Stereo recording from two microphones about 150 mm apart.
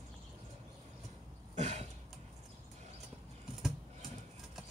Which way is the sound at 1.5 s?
50° right (ahead or behind).